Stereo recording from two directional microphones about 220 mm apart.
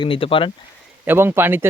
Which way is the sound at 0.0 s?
25° left (ahead or behind).